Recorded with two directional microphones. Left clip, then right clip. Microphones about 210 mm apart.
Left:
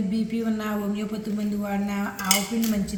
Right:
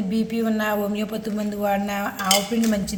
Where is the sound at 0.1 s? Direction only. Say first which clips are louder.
Right 4 dB; 55° right (ahead or behind).